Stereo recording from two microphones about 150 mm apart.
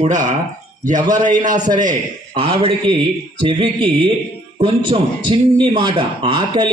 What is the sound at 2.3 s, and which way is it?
Speech, 35° right (ahead or behind).